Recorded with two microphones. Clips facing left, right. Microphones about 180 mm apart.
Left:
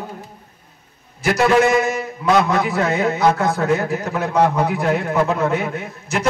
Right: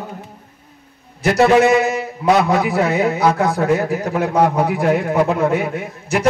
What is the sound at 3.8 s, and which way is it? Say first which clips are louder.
A man's voice: right 3 dB; 10° right (ahead or behind).